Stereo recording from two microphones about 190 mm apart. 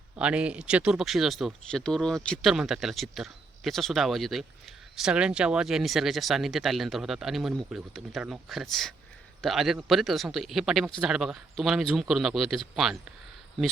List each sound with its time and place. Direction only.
0.2 s speech: 5° right (ahead or behind)